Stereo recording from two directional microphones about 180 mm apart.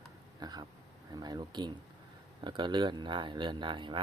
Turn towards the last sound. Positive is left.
turn(degrees=-25)  # may be behind; listen again after turning